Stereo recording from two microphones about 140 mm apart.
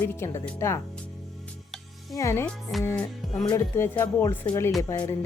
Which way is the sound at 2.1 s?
20° left (ahead or behind).